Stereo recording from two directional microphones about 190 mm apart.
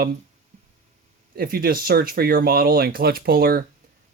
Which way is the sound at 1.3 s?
50° right (ahead or behind).